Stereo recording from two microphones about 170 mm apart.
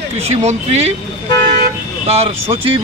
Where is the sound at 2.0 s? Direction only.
35° right (ahead or behind).